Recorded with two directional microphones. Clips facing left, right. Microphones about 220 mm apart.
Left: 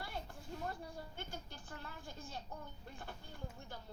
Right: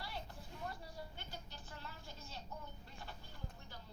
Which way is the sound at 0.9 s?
50° left (ahead or behind).